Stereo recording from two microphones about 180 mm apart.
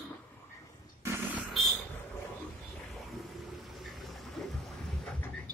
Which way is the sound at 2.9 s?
Centre (ahead or behind).